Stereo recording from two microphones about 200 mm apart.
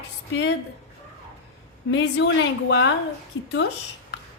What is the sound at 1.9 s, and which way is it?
A woman's voice, 65° left (ahead or behind).